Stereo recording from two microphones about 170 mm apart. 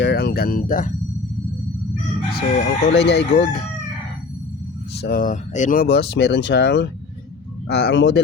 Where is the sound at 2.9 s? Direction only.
90° left.